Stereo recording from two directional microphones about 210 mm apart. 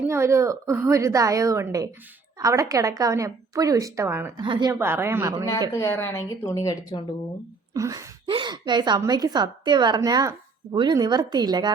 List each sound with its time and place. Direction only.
0.0 s a woman's voice: 10° right (ahead or behind)
5.7 s a woman's voice: 10° left (ahead or behind)
7.7 s a woman's voice: 15° right (ahead or behind)